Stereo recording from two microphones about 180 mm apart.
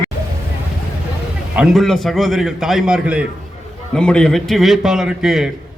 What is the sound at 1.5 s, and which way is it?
A man's voice, 5° right (ahead or behind).